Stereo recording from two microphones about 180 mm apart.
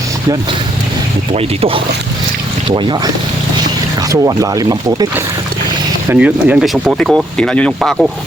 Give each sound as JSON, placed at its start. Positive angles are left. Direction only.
{"t": 1.3, "sound": "speech", "side_deg": -30}
{"t": 4.1, "sound": "speech", "side_deg": -20}
{"t": 6.1, "sound": "speech", "side_deg": -10}